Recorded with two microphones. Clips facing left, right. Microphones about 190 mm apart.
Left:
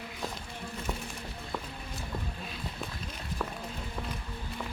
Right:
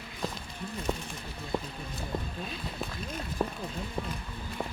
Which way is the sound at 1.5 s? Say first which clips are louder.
Right 6 dB; 30° right (ahead or behind).